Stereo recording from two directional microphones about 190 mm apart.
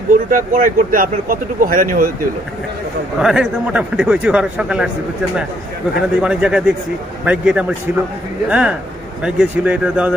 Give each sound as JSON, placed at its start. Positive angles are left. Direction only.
{"t": 0.1, "sound": "speech", "side_deg": -45}
{"t": 3.2, "sound": "speech", "side_deg": -5}
{"t": 6.2, "sound": "speech", "side_deg": -5}